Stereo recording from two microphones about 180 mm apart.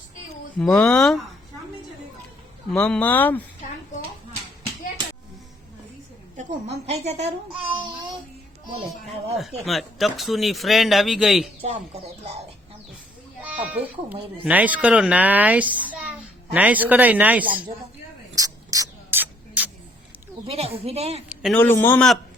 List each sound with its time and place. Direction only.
0.6 s speech: 5° left (ahead or behind)
2.6 s speech: 5° left (ahead or behind)
6.3 s a child's voice: 35° right (ahead or behind)
9.4 s speech: centre (ahead or behind)
11.6 s a child's voice: 35° right (ahead or behind)
13.4 s speech: 10° right (ahead or behind)
18.3 s a sound: 20° right (ahead or behind)
20.5 s a child's voice: 35° right (ahead or behind)
21.5 s speech: 10° left (ahead or behind)